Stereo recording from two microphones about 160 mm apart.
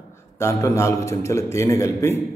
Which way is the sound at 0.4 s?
15° left (ahead or behind).